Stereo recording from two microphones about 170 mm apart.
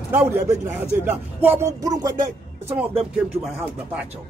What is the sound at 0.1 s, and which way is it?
A man's voice, 10° right (ahead or behind).